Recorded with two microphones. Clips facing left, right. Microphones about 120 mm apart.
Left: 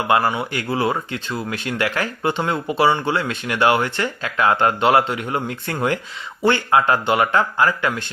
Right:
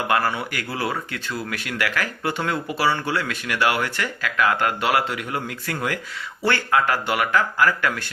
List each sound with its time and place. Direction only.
0.1 s speech: 20° left (ahead or behind)